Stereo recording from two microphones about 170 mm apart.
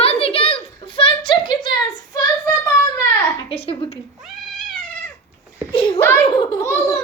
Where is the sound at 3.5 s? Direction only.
35° left (ahead or behind).